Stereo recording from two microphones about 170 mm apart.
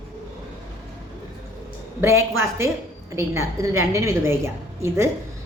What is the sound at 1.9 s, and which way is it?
A woman's voice, 15° right (ahead or behind).